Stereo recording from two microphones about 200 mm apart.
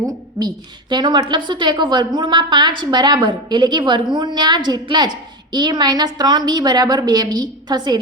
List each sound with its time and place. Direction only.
0.3 s a woman's voice: 20° right (ahead or behind)